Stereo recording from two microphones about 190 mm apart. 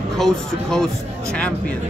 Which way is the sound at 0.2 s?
Centre (ahead or behind).